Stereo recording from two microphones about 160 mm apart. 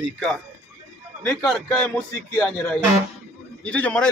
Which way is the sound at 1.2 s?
5° left (ahead or behind).